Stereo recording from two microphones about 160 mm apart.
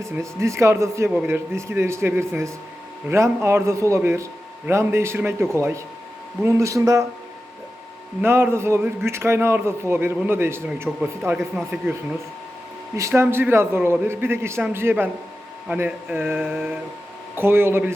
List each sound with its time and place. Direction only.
0.0 s a man's voice: 20° right (ahead or behind)
8.2 s a man's voice: 15° right (ahead or behind)
13.0 s a man's voice: 15° right (ahead or behind)